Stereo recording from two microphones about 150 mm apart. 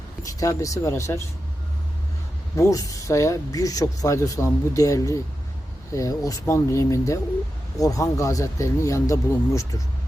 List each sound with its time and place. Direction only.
0.2 s speech: 20° left (ahead or behind)
2.6 s speech: 20° left (ahead or behind)